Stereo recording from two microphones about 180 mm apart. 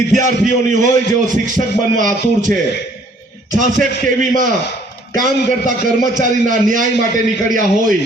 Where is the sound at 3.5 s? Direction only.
45° right (ahead or behind).